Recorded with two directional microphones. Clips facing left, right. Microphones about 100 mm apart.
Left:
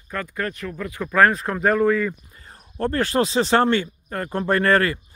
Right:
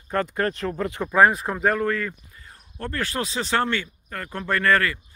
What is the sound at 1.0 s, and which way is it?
Speech, 15° right (ahead or behind).